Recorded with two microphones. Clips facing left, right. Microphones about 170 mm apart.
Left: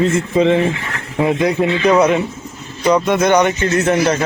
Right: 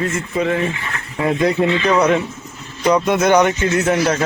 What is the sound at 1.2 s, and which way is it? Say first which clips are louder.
Speech: even; centre (ahead or behind).